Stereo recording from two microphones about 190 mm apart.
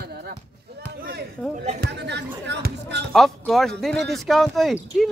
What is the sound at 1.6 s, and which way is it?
Speech, 40° right (ahead or behind).